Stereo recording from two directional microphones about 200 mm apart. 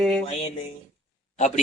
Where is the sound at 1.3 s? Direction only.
35° left (ahead or behind).